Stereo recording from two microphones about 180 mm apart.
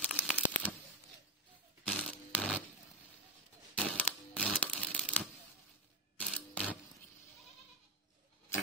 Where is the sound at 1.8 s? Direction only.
5° left (ahead or behind).